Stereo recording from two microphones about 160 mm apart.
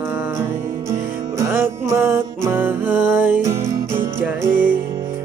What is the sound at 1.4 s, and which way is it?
Music, 15° right (ahead or behind).